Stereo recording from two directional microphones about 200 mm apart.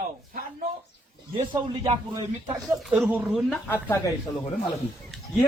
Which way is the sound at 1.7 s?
25° right (ahead or behind).